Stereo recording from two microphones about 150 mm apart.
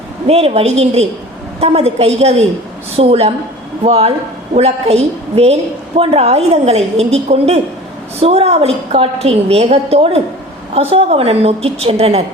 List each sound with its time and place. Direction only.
0.3 s a woman's voice: 40° right (ahead or behind)